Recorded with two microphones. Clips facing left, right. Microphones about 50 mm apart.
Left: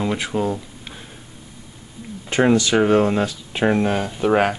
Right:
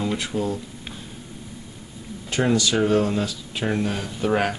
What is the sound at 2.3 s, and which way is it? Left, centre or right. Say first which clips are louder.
Speech: left 5 dB; left.